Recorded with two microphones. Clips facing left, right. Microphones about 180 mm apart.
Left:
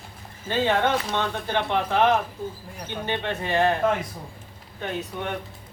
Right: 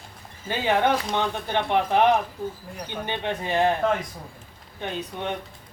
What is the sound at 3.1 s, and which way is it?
Speech, 15° right (ahead or behind).